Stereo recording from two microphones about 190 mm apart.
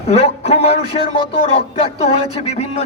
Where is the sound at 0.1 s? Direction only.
35° left (ahead or behind).